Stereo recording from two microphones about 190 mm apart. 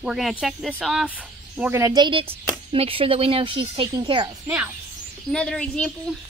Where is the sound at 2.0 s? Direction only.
25° right (ahead or behind); by 4.7 s 10° right (ahead or behind).